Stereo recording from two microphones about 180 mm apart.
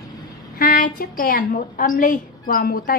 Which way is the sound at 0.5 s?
50° left (ahead or behind).